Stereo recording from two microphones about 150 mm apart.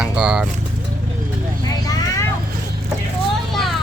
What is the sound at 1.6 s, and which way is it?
Vehicle, 25° left (ahead or behind).